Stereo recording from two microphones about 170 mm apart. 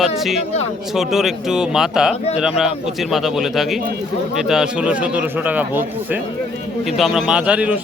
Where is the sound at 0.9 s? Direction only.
Centre (ahead or behind).